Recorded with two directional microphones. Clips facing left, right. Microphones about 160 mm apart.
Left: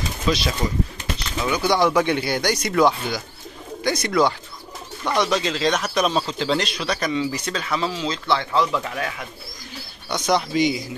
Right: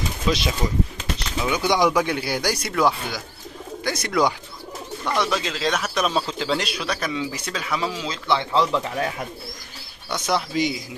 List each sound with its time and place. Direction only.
0.3 s speech: 20° right (ahead or behind)
1.9 s speech: 5° right (ahead or behind)
8.3 s speech: 20° right (ahead or behind)
10.2 s speech: centre (ahead or behind)